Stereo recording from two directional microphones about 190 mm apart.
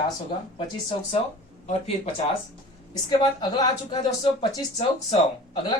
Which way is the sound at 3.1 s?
20° left (ahead or behind).